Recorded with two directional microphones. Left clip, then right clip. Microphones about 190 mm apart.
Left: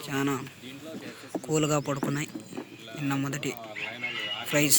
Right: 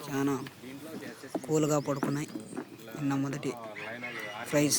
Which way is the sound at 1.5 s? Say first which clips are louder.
Left 1 dB; centre (ahead or behind).